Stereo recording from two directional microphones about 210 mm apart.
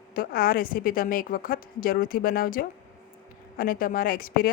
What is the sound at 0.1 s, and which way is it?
A woman's voice, 45° left (ahead or behind).